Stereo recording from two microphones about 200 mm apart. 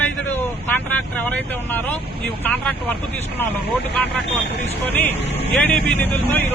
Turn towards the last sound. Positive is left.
turn(degrees=10)  # may be behind; listen again after turning